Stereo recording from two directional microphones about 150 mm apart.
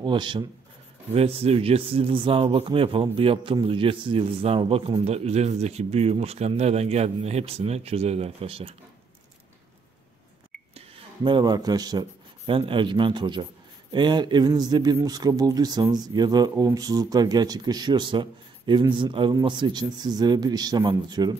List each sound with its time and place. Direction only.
0.0 s speech: 30° right (ahead or behind)
1.1 s speech: 40° right (ahead or behind)
11.2 s speech: 30° right (ahead or behind)